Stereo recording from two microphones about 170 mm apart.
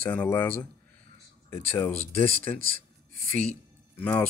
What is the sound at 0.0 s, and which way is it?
Speech, 10° left (ahead or behind).